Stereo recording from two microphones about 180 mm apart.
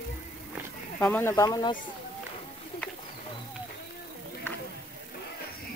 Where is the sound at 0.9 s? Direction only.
10° left (ahead or behind).